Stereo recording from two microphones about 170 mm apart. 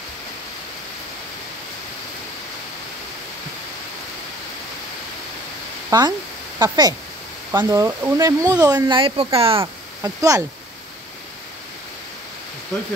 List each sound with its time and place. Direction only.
5.9 s speech: 25° right (ahead or behind)
10.0 s speech: 20° right (ahead or behind)